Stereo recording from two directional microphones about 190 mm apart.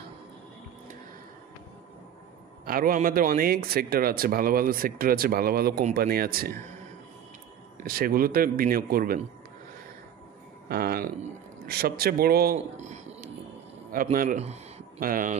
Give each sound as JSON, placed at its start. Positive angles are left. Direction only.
{"t": 2.6, "sound": "speech", "side_deg": -50}
{"t": 7.7, "sound": "speech", "side_deg": -50}
{"t": 10.7, "sound": "speech", "side_deg": -55}
{"t": 12.5, "sound": "a sound", "side_deg": -35}
{"t": 14.1, "sound": "speech", "side_deg": -40}